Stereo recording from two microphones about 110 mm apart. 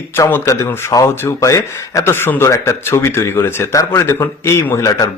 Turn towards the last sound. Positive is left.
turn(degrees=30)  # may be behind; listen again after turning